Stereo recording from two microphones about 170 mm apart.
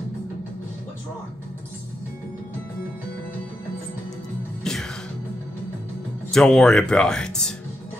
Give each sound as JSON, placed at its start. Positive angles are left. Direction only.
{"t": 4.7, "sound": "music", "side_deg": 5}
{"t": 6.3, "sound": "speech", "side_deg": 5}